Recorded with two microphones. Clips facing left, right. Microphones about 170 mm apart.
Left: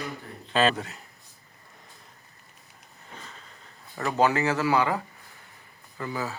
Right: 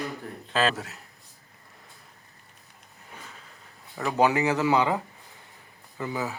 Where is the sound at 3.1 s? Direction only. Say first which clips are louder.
Left 1 dB; 5° right (ahead or behind).